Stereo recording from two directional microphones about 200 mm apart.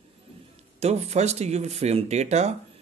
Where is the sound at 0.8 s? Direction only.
35° right (ahead or behind).